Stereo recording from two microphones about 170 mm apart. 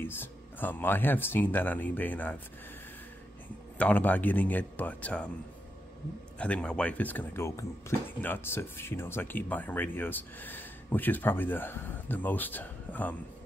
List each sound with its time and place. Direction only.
0.0 s speech: 10° left (ahead or behind)
3.7 s speech: 10° left (ahead or behind)
6.3 s speech: 5° left (ahead or behind)